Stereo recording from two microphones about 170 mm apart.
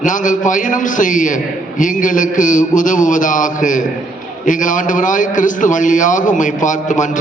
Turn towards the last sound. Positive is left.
turn(degrees=45)  # may be behind; listen again after turning